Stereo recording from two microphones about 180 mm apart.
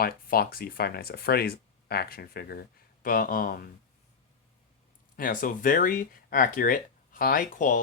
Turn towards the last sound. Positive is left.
turn(degrees=45)  # may be behind; listen again after turning